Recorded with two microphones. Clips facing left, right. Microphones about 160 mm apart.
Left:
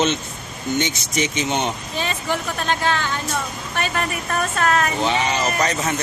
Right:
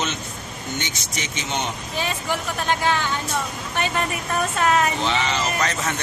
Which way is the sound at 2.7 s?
15° right (ahead or behind).